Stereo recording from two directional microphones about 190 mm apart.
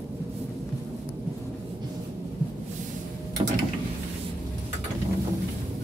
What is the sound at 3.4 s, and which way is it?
Mechanisms, 30° right (ahead or behind).